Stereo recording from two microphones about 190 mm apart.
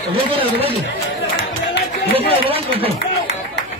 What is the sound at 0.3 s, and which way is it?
Speech, 30° right (ahead or behind).